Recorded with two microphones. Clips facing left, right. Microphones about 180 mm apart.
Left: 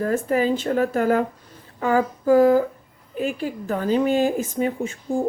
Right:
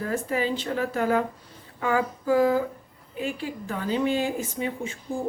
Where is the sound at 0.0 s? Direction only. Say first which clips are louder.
Left 6 dB; 45° left (ahead or behind).